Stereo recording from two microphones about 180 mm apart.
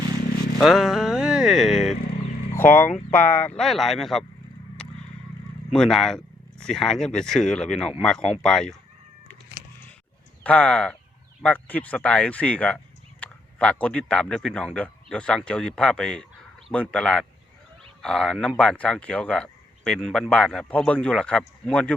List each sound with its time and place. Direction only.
0.6 s a sound: centre (ahead or behind)
2.6 s speech: 10° left (ahead or behind)
5.7 s speech: 5° left (ahead or behind)
10.4 s speech: 5° left (ahead or behind)